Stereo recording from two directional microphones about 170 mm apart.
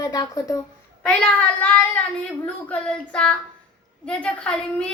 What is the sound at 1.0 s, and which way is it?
A woman's voice, 5° left (ahead or behind).